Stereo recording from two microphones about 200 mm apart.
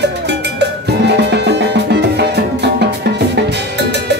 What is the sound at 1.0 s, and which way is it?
Music, 55° right (ahead or behind).